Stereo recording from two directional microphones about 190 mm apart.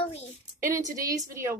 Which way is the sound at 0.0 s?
35° left (ahead or behind).